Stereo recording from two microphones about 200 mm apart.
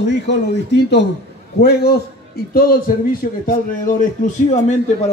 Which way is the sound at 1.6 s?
55° left (ahead or behind).